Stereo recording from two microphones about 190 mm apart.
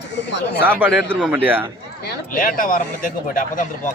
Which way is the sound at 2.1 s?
50° left (ahead or behind).